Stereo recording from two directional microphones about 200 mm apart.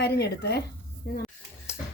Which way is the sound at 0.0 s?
55° left (ahead or behind).